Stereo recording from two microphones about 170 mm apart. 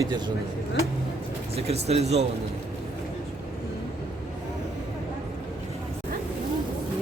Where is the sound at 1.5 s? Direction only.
35° right (ahead or behind).